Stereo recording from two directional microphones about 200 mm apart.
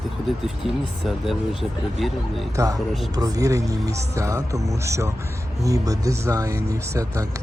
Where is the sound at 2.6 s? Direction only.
15° right (ahead or behind).